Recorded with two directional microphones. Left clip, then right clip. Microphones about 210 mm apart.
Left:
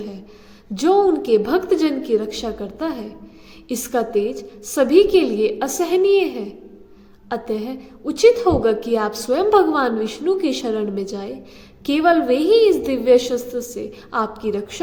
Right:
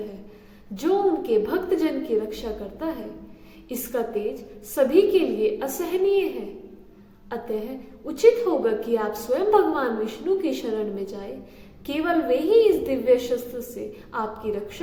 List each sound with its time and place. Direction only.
0.8 s a woman's voice: 45° left (ahead or behind)
7.3 s a woman's voice: 45° left (ahead or behind)